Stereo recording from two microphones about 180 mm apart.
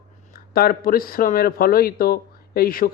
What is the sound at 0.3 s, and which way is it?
Speech, 55° left (ahead or behind).